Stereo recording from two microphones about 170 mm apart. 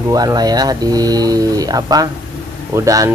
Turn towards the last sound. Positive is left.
turn(degrees=-20)  # may be behind; listen again after turning